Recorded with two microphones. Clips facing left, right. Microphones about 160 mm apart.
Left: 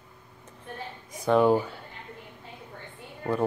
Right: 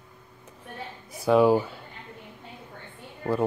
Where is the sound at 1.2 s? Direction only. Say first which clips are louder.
Right 2 dB; 5° right (ahead or behind).